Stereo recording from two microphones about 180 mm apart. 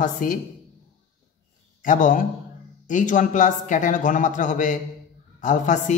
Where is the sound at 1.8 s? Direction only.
45° left (ahead or behind).